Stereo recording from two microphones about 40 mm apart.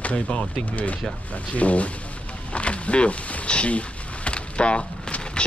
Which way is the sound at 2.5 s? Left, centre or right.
Left.